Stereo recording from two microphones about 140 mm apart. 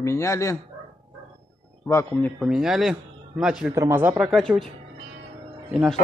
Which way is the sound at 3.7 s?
20° right (ahead or behind).